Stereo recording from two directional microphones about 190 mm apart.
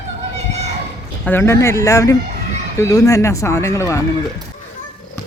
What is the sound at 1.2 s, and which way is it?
Speech, 10° left (ahead or behind).